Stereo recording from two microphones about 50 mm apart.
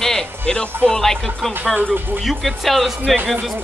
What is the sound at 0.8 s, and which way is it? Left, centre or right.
Speech, centre.